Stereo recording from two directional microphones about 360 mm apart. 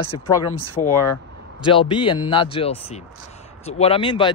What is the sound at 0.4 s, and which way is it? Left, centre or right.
Speech, left.